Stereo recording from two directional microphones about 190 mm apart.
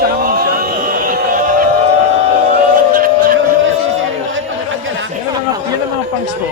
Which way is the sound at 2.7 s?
50° right (ahead or behind).